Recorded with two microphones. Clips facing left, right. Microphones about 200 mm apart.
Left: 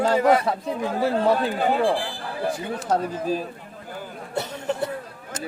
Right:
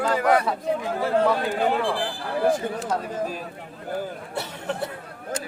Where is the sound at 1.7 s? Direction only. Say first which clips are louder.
Left 3 dB; 45° left (ahead or behind).